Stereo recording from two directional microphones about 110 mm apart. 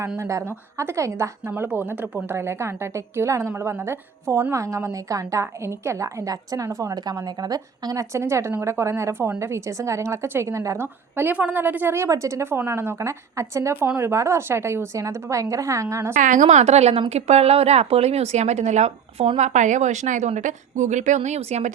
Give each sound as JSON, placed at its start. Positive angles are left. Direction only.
{"t": 0.2, "sound": "speech", "side_deg": -30}
{"t": 16.5, "sound": "speech", "side_deg": -90}